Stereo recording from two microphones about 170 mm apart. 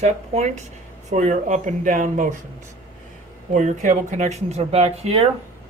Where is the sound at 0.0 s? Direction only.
40° right (ahead or behind).